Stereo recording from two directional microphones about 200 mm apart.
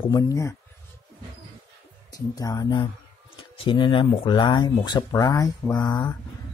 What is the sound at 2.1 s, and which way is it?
Speech, 20° left (ahead or behind).